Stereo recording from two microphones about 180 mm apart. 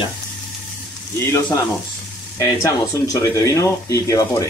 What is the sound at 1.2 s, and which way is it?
Speech, 15° left (ahead or behind).